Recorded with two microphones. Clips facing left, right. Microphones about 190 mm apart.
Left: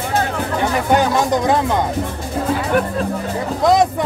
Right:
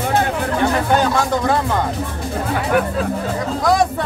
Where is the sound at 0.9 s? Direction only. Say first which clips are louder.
Left 1 dB; 15° left (ahead or behind).